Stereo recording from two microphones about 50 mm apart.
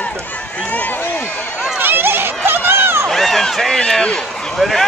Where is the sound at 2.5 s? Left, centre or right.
Right.